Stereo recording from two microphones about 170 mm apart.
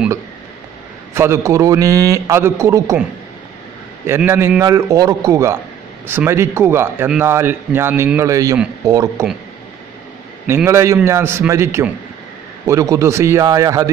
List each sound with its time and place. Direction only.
1.1 s a man's voice: 15° right (ahead or behind)
4.1 s a man's voice: 15° right (ahead or behind)
10.4 s a man's voice: 15° right (ahead or behind)